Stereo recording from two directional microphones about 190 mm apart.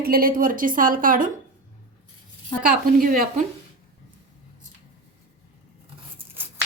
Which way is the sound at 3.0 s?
50° right (ahead or behind).